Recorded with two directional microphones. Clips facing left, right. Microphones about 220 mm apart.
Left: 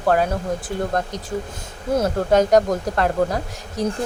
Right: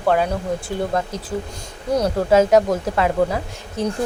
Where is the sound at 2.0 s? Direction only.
5° right (ahead or behind).